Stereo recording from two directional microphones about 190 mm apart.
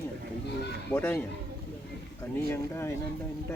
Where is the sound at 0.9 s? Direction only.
10° left (ahead or behind).